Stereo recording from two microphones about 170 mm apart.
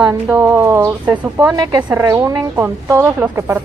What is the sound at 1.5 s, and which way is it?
A woman's voice, 25° right (ahead or behind).